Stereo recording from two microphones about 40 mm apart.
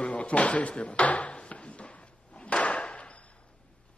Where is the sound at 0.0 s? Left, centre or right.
Left.